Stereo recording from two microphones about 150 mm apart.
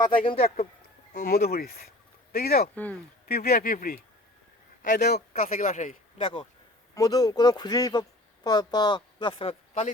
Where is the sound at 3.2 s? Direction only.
90° left; by 6.2 s 55° left (ahead or behind).